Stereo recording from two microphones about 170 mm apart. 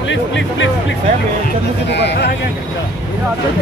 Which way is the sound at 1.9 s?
85° left.